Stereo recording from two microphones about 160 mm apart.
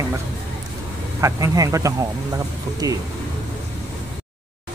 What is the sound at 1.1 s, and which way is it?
Speech, 20° right (ahead or behind).